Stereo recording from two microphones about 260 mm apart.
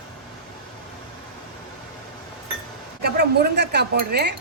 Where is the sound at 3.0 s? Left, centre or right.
Right.